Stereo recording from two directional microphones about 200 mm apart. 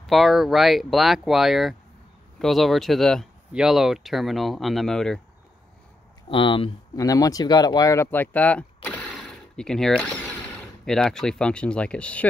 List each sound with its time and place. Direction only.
0.0 s speech: centre (ahead or behind)
6.2 s speech: 25° left (ahead or behind); by 12.3 s 5° left (ahead or behind)